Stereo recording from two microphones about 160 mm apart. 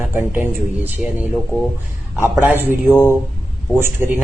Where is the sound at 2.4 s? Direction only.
15° right (ahead or behind).